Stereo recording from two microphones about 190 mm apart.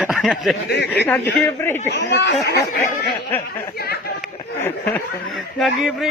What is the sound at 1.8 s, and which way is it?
Speech, 65° left (ahead or behind).